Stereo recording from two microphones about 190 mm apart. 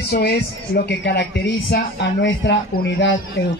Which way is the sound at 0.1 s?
55° left (ahead or behind).